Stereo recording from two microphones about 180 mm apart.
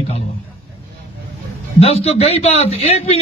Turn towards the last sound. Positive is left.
turn(degrees=35)  # may be behind; listen again after turning